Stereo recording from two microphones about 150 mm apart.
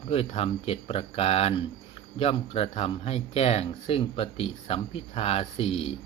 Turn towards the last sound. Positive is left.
turn(degrees=40)  # may be behind; listen again after turning